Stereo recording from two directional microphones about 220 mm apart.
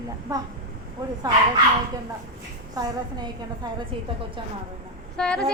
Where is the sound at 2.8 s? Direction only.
15° right (ahead or behind).